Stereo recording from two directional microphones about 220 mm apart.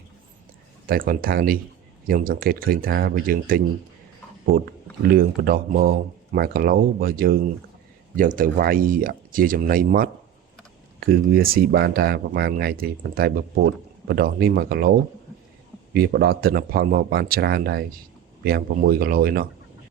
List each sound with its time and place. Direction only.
0.9 s speech: 40° right (ahead or behind)
16.0 s speech: 45° right (ahead or behind)